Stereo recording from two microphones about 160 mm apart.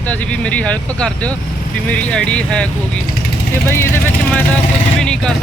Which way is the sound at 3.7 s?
15° left (ahead or behind).